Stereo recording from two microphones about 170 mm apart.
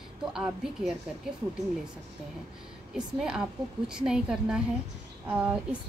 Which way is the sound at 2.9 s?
5° right (ahead or behind).